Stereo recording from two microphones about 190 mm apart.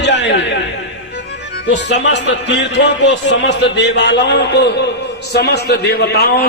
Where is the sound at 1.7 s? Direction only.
65° left (ahead or behind).